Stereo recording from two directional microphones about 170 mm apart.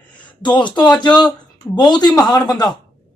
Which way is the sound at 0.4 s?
25° left (ahead or behind).